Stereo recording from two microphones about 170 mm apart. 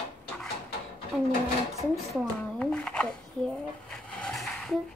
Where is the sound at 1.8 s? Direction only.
Centre (ahead or behind).